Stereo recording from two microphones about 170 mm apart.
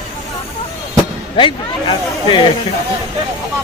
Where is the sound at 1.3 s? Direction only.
30° left (ahead or behind).